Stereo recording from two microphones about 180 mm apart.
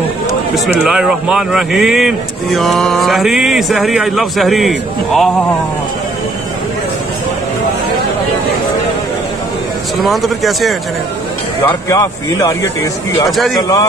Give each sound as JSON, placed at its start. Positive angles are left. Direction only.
{"t": 0.8, "sound": "speech", "side_deg": -5}
{"t": 10.0, "sound": "speech", "side_deg": 0}
{"t": 11.6, "sound": "speech", "side_deg": 20}
{"t": 13.6, "sound": "speech", "side_deg": 20}